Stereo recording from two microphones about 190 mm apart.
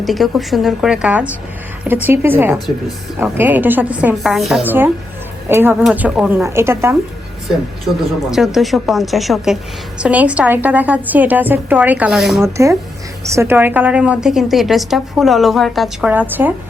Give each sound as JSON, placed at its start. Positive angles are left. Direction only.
{"t": 0.0, "sound": "a woman's voice", "side_deg": 0}
{"t": 8.3, "sound": "a woman's voice", "side_deg": 0}
{"t": 12.4, "sound": "a woman's voice", "side_deg": -15}